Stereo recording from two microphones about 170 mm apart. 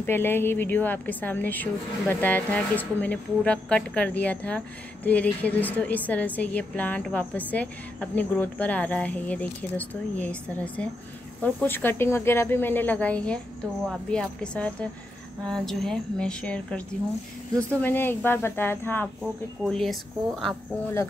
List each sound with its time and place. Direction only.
0.0 s a woman's voice: 15° left (ahead or behind)
17.8 s a woman's voice: 10° left (ahead or behind)
19.6 s speech: centre (ahead or behind)